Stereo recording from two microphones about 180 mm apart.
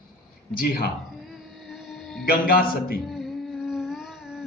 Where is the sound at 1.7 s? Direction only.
Centre (ahead or behind).